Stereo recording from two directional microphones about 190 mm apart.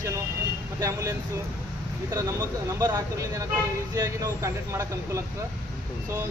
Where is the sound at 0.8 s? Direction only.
15° right (ahead or behind).